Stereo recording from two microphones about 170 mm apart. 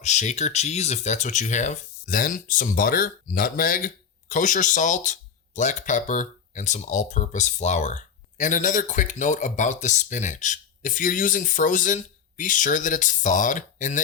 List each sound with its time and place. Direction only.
0.0 s speech: 45° left (ahead or behind)